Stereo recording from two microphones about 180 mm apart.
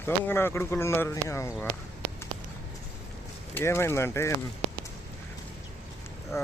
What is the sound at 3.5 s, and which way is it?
Speech, 15° left (ahead or behind).